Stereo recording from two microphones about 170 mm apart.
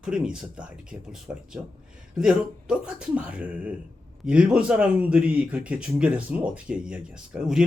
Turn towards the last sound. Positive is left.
turn(degrees=-5)  # may be behind; listen again after turning